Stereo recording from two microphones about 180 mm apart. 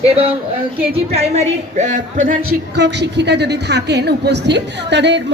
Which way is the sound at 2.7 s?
75° right (ahead or behind).